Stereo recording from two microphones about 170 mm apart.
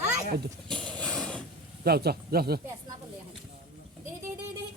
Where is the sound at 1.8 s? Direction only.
65° right (ahead or behind).